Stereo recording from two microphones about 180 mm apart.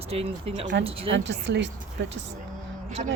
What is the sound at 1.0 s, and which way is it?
Speech, 90° right.